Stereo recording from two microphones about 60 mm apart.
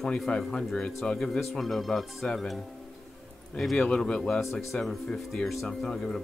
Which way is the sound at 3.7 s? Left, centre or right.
Centre.